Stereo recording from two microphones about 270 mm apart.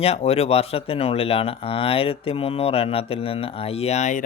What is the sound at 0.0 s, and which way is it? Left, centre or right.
Speech, left.